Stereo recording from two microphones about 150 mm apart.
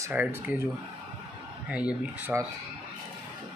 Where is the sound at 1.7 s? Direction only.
10° right (ahead or behind).